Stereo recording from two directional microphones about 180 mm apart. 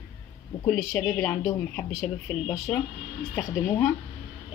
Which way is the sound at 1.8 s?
5° right (ahead or behind).